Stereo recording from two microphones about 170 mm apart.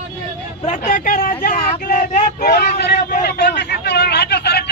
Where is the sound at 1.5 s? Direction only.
45° left (ahead or behind); by 4.6 s 75° left (ahead or behind).